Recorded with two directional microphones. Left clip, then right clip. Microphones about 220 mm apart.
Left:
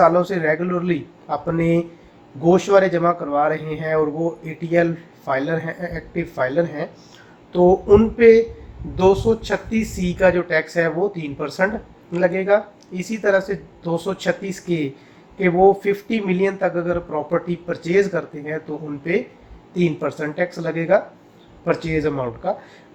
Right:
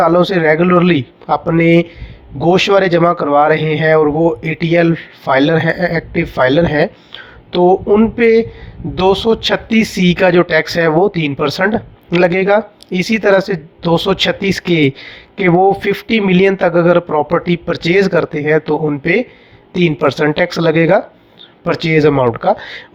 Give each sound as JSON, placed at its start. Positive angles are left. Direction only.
{"t": 0.0, "sound": "speech", "side_deg": -35}